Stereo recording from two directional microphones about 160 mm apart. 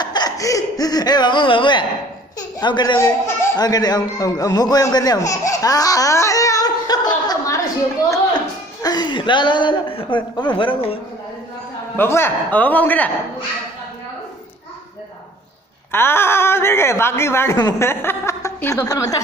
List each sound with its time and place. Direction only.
0.0 s a sound: 25° left (ahead or behind)
2.6 s a man's voice: 30° left (ahead or behind)
8.8 s a man's voice: 25° left (ahead or behind)
12.0 s a woman's voice: 15° left (ahead or behind)
15.9 s a woman's voice: 15° left (ahead or behind)